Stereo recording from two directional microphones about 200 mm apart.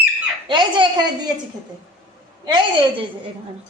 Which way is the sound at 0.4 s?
25° right (ahead or behind).